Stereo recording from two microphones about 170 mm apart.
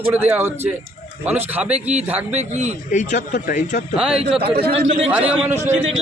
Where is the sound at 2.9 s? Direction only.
45° left (ahead or behind).